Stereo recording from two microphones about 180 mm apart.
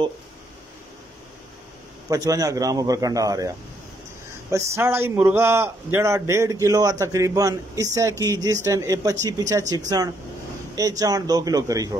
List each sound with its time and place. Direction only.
2.0 s a man's voice: 20° right (ahead or behind)